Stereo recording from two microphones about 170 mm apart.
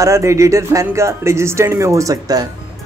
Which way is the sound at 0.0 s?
15° right (ahead or behind).